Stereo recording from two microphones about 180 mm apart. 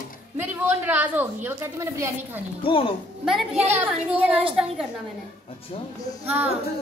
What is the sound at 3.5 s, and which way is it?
A woman's voice, 35° right (ahead or behind).